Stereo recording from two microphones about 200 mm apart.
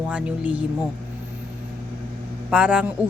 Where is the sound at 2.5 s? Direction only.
5° right (ahead or behind).